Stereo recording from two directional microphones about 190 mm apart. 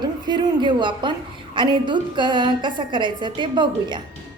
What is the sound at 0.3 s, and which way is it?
A woman's voice, 25° right (ahead or behind).